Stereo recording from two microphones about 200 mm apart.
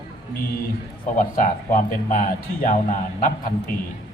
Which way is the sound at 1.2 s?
40° left (ahead or behind).